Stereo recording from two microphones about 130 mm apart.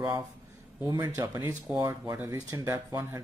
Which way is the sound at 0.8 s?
25° right (ahead or behind).